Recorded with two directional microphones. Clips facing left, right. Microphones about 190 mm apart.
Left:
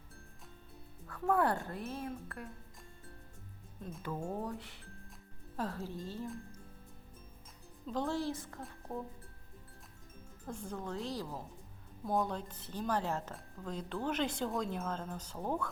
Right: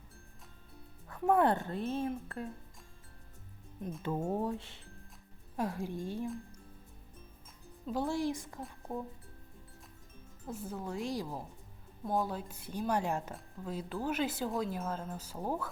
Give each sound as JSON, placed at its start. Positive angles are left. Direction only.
{"t": 1.0, "sound": "speech", "side_deg": -20}
{"t": 4.0, "sound": "speech", "side_deg": -30}
{"t": 5.5, "sound": "speech", "side_deg": -15}
{"t": 7.9, "sound": "speech", "side_deg": -10}
{"t": 10.4, "sound": "speech", "side_deg": -5}
{"t": 12.0, "sound": "speech", "side_deg": 0}